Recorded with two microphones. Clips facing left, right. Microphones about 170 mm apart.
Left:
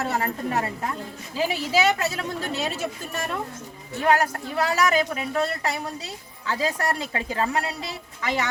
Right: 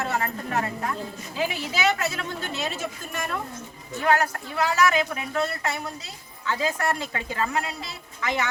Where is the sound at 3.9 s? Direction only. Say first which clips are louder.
Left 1 dB; 35° left (ahead or behind).